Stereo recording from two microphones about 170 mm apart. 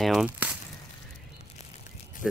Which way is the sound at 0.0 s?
Centre (ahead or behind).